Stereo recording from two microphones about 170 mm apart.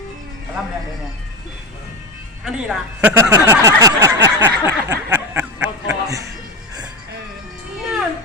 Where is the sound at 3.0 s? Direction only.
20° right (ahead or behind).